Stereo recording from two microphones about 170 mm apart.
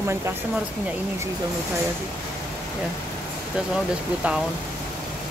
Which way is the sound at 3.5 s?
5° right (ahead or behind).